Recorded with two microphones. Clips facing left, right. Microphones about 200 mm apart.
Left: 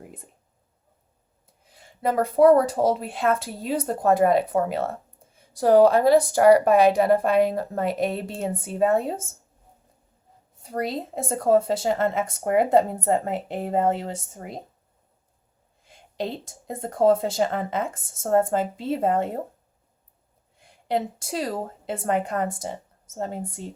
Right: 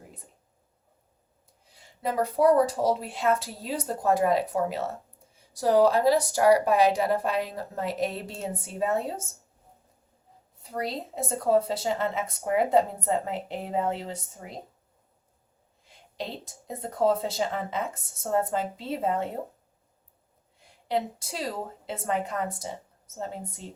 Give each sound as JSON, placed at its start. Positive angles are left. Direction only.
{"t": 1.7, "sound": "a woman's voice", "side_deg": 55}
{"t": 10.6, "sound": "speech", "side_deg": 50}
{"t": 15.9, "sound": "speech", "side_deg": 50}
{"t": 20.8, "sound": "a woman's voice", "side_deg": 50}